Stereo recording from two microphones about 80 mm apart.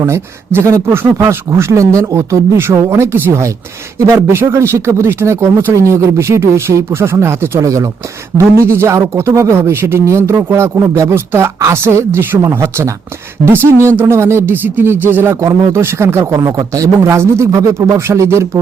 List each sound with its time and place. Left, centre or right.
0.0 s speech: right